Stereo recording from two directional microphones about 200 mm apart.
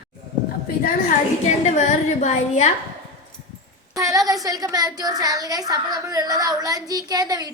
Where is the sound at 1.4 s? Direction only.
35° left (ahead or behind).